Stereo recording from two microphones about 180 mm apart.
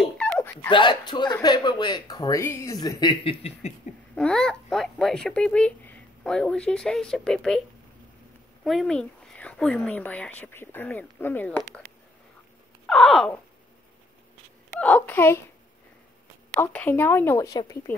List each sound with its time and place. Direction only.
0.0 s dog: 5° left (ahead or behind)
0.7 s speech: 25° left (ahead or behind)
4.1 s speech: 5° left (ahead or behind)
8.6 s speech: centre (ahead or behind)
12.8 s a sound: centre (ahead or behind)
14.7 s a woman's voice: 10° left (ahead or behind)
16.5 s speech: 10° left (ahead or behind)